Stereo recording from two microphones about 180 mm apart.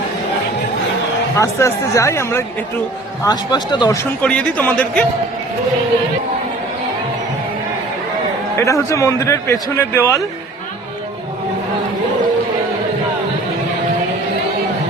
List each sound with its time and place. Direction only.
1.4 s a man's voice: 15° left (ahead or behind)
4.2 s a man's voice: 5° left (ahead or behind)
8.5 s a man's voice: 15° left (ahead or behind)